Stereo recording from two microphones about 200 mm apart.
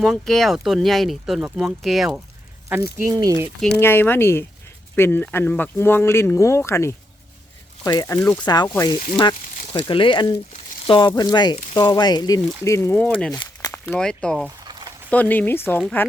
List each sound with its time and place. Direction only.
0.0 s speech: centre (ahead or behind); by 3.5 s 15° right (ahead or behind)
3.8 s speech: 10° left (ahead or behind)
13.3 s a sound: 20° left (ahead or behind)
13.8 s speech: 5° left (ahead or behind)
14.6 s a sound: 20° right (ahead or behind)
15.1 s speech: 10° left (ahead or behind)